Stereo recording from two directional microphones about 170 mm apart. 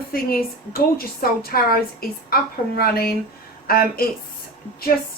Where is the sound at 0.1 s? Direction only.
60° left (ahead or behind).